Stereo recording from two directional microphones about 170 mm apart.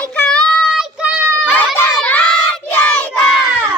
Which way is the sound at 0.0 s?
5° left (ahead or behind).